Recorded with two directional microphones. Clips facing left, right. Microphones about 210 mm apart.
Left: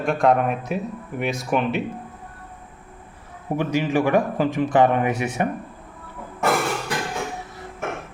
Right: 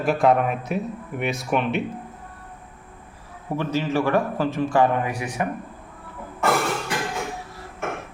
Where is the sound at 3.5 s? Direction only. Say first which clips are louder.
Left 2 dB; 15° left (ahead or behind).